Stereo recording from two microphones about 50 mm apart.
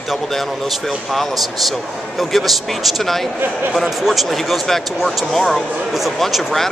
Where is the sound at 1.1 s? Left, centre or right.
Centre.